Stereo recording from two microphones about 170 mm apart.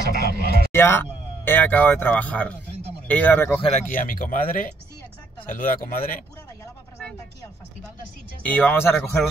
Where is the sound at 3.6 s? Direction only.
45° left (ahead or behind).